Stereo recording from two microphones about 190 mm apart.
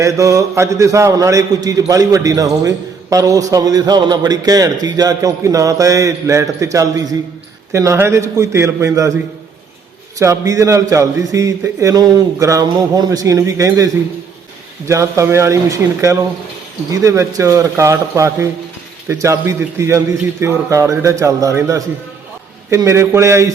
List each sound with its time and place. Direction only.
0.0 s a man's voice: 15° right (ahead or behind)
10.2 s a man's voice: 15° right (ahead or behind)